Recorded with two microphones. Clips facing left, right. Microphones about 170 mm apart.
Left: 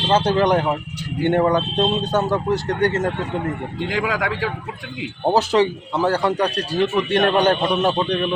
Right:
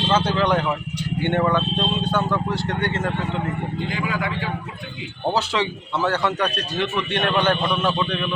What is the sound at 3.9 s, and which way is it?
Speech, 90° left.